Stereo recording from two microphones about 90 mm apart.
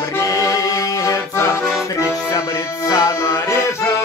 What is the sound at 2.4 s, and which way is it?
Music, 40° left (ahead or behind).